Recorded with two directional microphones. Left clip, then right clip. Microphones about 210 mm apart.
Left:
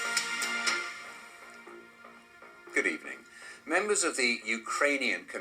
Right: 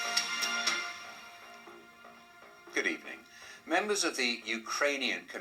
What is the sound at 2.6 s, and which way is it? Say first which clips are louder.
Speech: left 3 dB; 35° left (ahead or behind).